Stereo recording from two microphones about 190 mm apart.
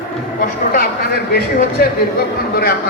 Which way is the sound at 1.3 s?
50° left (ahead or behind).